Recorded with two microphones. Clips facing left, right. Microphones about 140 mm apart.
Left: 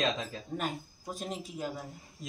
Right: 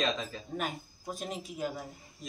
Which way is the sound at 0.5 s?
5° right (ahead or behind).